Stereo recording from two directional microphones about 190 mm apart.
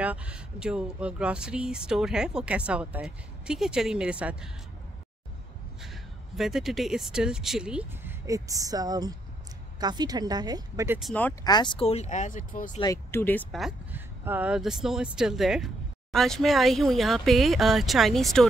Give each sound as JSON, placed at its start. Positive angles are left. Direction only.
{"t": 0.0, "sound": "speech", "side_deg": -5}
{"t": 6.3, "sound": "speech", "side_deg": 0}
{"t": 11.0, "sound": "speech", "side_deg": 5}
{"t": 11.4, "sound": "speech", "side_deg": 25}
{"t": 12.8, "sound": "speech", "side_deg": 15}
{"t": 13.5, "sound": "speech", "side_deg": 0}